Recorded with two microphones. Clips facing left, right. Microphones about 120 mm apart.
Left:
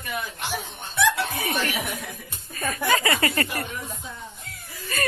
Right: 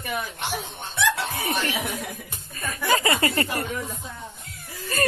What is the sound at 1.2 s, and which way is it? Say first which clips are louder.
A woman's voice: even; 25° right (ahead or behind).